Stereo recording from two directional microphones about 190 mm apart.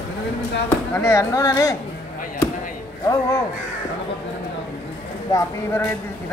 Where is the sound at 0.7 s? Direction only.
15° left (ahead or behind).